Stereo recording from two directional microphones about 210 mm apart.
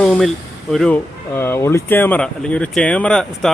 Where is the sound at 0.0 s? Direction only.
5° left (ahead or behind).